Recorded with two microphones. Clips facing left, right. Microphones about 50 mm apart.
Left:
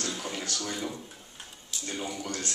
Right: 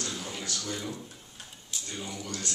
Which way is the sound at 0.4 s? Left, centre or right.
Left.